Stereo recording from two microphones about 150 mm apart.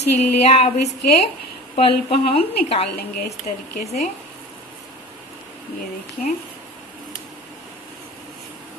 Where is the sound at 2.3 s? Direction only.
40° left (ahead or behind).